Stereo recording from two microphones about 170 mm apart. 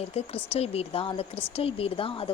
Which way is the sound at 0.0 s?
35° left (ahead or behind).